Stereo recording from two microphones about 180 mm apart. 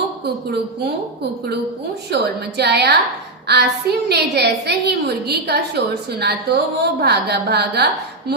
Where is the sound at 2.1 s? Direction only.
65° right (ahead or behind).